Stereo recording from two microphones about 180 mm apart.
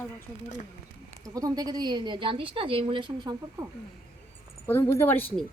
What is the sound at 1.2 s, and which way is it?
A woman's voice, 20° right (ahead or behind).